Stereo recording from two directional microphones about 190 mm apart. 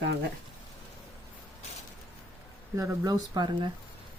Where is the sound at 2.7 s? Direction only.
15° right (ahead or behind).